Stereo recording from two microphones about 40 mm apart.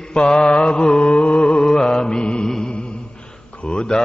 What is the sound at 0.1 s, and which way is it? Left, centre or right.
Mantra, left.